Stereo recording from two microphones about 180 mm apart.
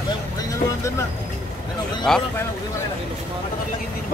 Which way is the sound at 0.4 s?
15° left (ahead or behind).